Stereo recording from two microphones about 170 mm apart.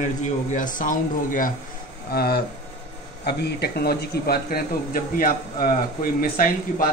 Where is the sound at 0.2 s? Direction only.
45° left (ahead or behind).